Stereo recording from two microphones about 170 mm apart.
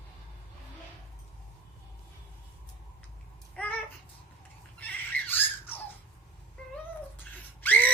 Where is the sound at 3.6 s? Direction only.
10° left (ahead or behind).